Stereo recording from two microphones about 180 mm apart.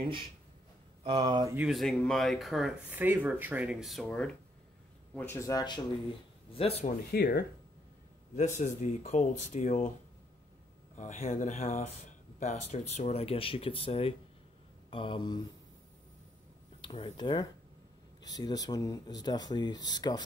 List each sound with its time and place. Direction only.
1.0 s speech: 30° right (ahead or behind)
1.5 s speech: 5° right (ahead or behind); by 5.8 s 20° left (ahead or behind)
6.5 s speech: 35° left (ahead or behind)
7.1 s speech: 60° left (ahead or behind)
8.5 s speech: 40° left (ahead or behind)
11.0 s speech: 40° left (ahead or behind); by 15.4 s 25° left (ahead or behind)
16.8 s speech: 30° left (ahead or behind)